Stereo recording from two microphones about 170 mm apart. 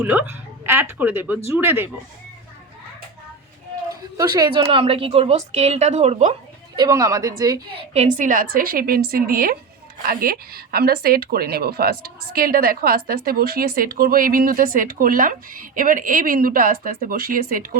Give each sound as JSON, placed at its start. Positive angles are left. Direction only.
{"t": 0.0, "sound": "speech", "side_deg": -10}
{"t": 4.2, "sound": "a woman's voice", "side_deg": -25}
{"t": 6.7, "sound": "a woman's voice", "side_deg": -20}
{"t": 7.9, "sound": "a woman's voice", "side_deg": -45}